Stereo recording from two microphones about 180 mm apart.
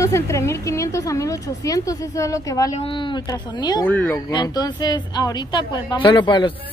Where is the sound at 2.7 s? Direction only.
30° left (ahead or behind).